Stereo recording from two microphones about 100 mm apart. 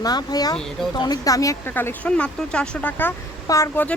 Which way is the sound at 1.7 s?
20° left (ahead or behind).